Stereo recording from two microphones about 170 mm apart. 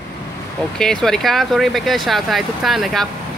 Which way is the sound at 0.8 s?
5° left (ahead or behind).